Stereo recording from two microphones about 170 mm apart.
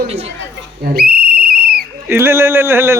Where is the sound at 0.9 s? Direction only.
65° right (ahead or behind).